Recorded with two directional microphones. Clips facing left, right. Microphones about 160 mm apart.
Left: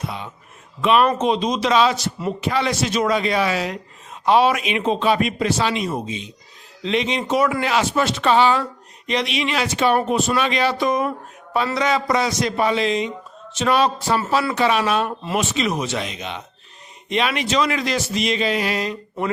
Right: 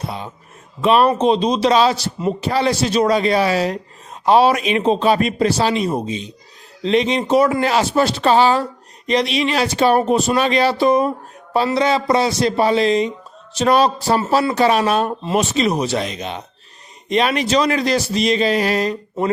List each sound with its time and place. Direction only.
0.0 s speech: 35° right (ahead or behind)